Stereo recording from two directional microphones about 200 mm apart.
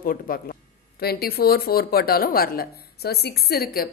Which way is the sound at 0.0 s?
45° left (ahead or behind).